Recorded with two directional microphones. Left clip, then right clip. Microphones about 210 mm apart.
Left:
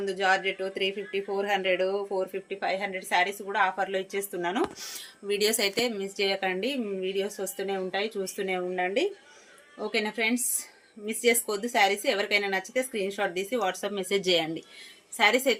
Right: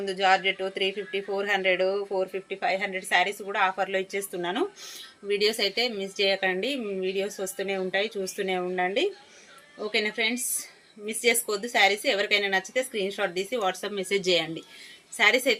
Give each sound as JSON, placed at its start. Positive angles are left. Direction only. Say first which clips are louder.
{"t": 0.0, "sound": "speech", "louder": "right 3 dB", "side_deg": 15}